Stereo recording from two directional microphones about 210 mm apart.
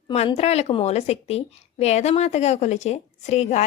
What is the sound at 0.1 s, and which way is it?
A woman's voice, 30° left (ahead or behind).